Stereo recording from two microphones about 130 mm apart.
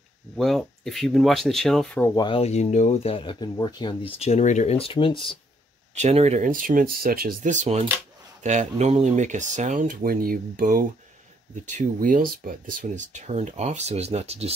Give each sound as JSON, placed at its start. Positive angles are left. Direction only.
{"t": 0.4, "sound": "speech", "side_deg": 0}
{"t": 2.1, "sound": "speech", "side_deg": 40}
{"t": 2.4, "sound": "speech", "side_deg": 60}
{"t": 4.2, "sound": "speech", "side_deg": 60}
{"t": 5.9, "sound": "speech", "side_deg": -60}